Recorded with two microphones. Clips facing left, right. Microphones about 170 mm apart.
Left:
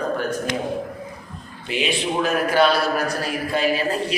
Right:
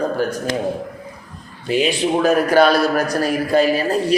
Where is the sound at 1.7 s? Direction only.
40° right (ahead or behind).